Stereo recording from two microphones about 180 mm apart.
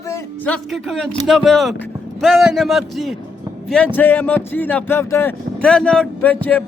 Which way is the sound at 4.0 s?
10° left (ahead or behind).